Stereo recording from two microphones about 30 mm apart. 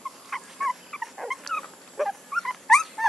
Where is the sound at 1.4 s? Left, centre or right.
Centre.